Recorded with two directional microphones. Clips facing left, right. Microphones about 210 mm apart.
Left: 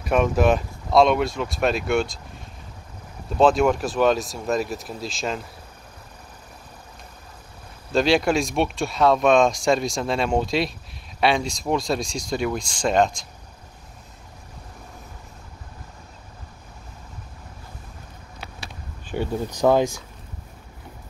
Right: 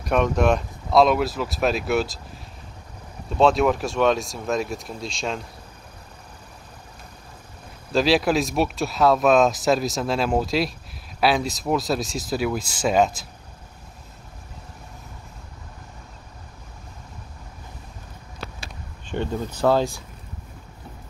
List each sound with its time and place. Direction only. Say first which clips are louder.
0.0 s speech: left 1 dB; centre (ahead or behind)
3.3 s speech: left 1 dB; centre (ahead or behind)
7.9 s speech: even; centre (ahead or behind)
19.0 s speech: left 1 dB; 10° left (ahead or behind)